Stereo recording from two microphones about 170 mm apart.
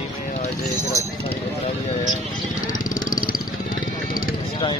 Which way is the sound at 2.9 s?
55° left (ahead or behind).